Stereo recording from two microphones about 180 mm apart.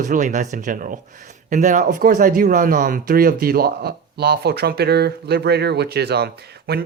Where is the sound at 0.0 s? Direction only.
45° right (ahead or behind).